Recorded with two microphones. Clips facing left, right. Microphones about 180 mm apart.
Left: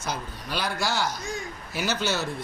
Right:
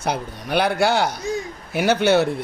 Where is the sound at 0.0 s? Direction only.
60° right (ahead or behind).